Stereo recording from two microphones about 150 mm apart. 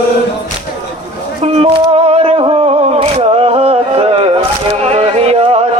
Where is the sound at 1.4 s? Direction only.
40° right (ahead or behind).